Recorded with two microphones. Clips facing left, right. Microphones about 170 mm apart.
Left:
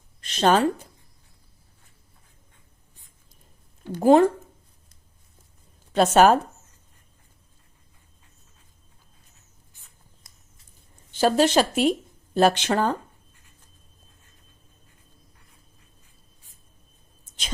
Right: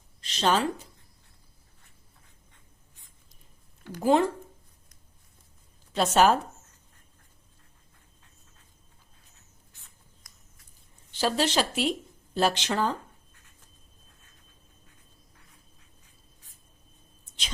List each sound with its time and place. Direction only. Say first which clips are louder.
0.2 s a woman's voice: left 6 dB; 50° left (ahead or behind)
4.0 s speech: left 7 dB; 50° left (ahead or behind)
5.9 s speech: left 5 dB; 55° left (ahead or behind)
10.3 s a sound: left 1 dB; 25° left (ahead or behind)
11.1 s speech: left 7 dB; 50° left (ahead or behind)